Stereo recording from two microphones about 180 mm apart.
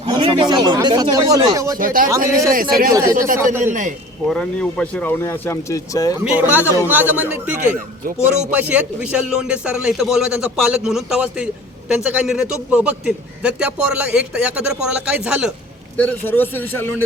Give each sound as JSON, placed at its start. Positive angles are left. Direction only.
{"t": 0.0, "sound": "speech", "side_deg": -25}
{"t": 1.8, "sound": "a man's voice", "side_deg": -50}
{"t": 2.9, "sound": "speech", "side_deg": -20}
{"t": 3.6, "sound": "a man's voice", "side_deg": -45}
{"t": 4.3, "sound": "speech", "side_deg": 5}
{"t": 6.2, "sound": "a man's voice", "side_deg": -10}
{"t": 7.6, "sound": "a man's voice", "side_deg": -40}
{"t": 8.4, "sound": "a man's voice", "side_deg": -5}
{"t": 16.0, "sound": "speech", "side_deg": 10}